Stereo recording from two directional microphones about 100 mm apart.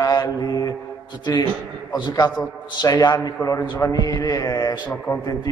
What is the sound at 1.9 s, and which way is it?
Speech, 45° left (ahead or behind).